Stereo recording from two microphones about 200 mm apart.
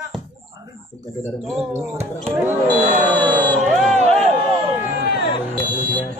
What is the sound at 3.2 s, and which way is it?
Crowd, 5° left (ahead or behind).